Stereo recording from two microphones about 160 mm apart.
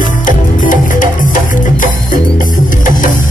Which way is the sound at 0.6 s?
55° left (ahead or behind).